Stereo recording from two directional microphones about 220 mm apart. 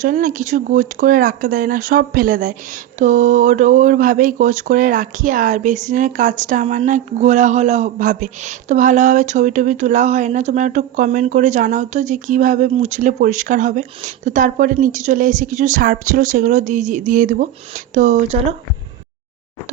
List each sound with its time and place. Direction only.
0.0 s speech: 35° right (ahead or behind)